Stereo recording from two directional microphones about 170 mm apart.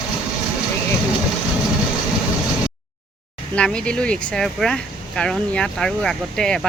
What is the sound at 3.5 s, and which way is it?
Speech, 5° left (ahead or behind).